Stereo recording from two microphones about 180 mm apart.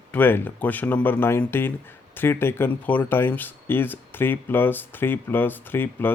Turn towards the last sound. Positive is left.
turn(degrees=10)  # may be behind; listen again after turning